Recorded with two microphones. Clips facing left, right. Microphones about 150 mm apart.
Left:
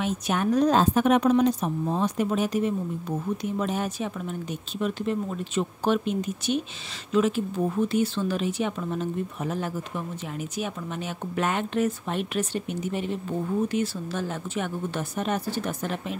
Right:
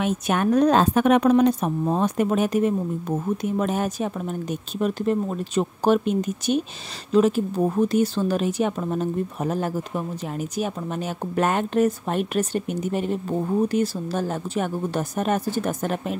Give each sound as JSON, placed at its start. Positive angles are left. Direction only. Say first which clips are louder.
{"t": 0.0, "sound": "speech", "louder": "right 4 dB", "side_deg": -55}